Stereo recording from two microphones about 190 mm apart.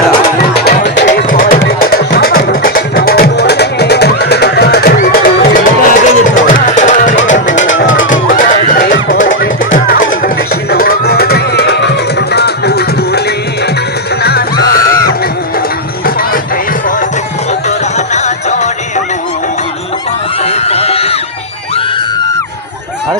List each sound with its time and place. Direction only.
0.5 s music: 55° left (ahead or behind)
1.3 s music: 45° left (ahead or behind)
7.4 s music: 80° left
8.0 s music: 45° left (ahead or behind)
17.5 s music: 35° left (ahead or behind)
20.4 s a sound: 35° left (ahead or behind)